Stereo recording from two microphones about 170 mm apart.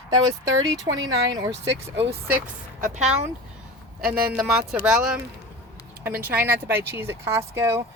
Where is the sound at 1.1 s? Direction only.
25° right (ahead or behind).